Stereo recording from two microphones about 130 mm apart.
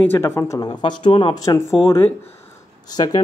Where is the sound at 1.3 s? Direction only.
30° left (ahead or behind).